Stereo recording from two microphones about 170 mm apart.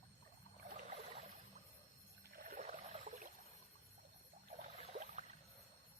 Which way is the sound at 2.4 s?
50° right (ahead or behind).